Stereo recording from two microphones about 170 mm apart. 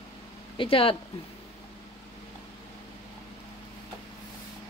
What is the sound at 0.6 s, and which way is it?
Speech, 30° left (ahead or behind).